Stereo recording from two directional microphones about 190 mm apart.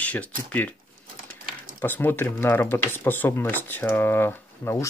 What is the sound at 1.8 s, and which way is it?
Speech, 10° left (ahead or behind).